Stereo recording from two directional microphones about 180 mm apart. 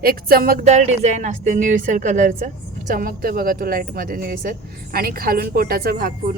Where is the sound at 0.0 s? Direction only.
55° right (ahead or behind).